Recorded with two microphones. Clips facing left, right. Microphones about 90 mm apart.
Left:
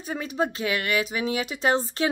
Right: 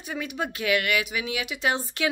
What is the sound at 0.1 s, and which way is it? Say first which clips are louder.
Speech: left 4 dB; 35° left (ahead or behind).